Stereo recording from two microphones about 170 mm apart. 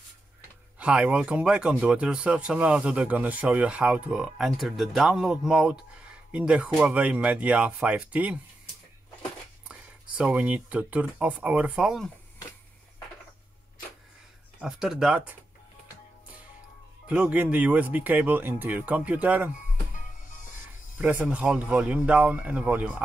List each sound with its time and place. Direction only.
0.7 s speech: 5° right (ahead or behind)
10.1 s speech: 5° right (ahead or behind)
14.6 s speech: 5° right (ahead or behind)
17.1 s speech: 5° right (ahead or behind)
20.2 s music: 50° left (ahead or behind)
21.0 s speech: 10° right (ahead or behind)